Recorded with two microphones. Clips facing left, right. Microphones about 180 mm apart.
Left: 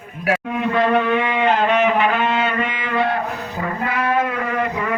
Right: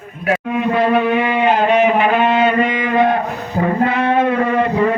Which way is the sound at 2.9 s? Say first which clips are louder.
Right 4 dB; 20° right (ahead or behind).